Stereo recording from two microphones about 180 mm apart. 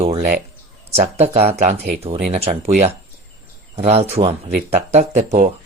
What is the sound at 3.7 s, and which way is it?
Speech, 35° right (ahead or behind).